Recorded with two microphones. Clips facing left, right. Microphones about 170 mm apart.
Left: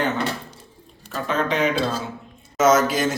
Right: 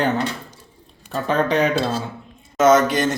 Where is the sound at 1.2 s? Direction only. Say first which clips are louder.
Right 4 dB; 35° right (ahead or behind).